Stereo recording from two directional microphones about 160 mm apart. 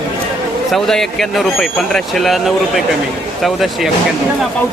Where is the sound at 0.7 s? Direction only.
Centre (ahead or behind).